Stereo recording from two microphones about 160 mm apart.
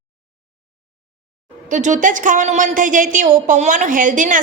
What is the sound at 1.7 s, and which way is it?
A woman's voice, 50° right (ahead or behind).